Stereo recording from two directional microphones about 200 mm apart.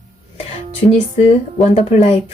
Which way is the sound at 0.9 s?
30° left (ahead or behind).